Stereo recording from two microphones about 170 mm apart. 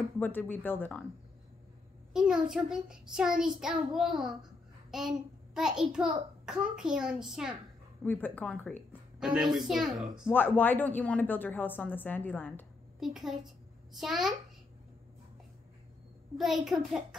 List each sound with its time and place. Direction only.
0.2 s a woman's voice: 10° left (ahead or behind)
2.1 s a child's voice: 5° right (ahead or behind)
8.0 s a woman's voice: 10° left (ahead or behind)
9.2 s a child's voice: 5° right (ahead or behind)
10.3 s a woman's voice: 10° left (ahead or behind)
13.0 s a child's voice: centre (ahead or behind)
16.3 s a child's voice: centre (ahead or behind)